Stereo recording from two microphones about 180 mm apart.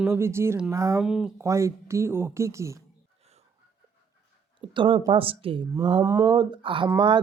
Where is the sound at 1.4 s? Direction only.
15° right (ahead or behind).